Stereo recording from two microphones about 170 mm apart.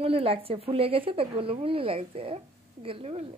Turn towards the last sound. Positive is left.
turn(degrees=-35)  # may be behind; listen again after turning